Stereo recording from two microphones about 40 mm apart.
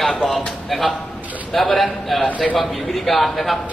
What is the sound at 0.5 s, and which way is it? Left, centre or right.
A man's voice, centre.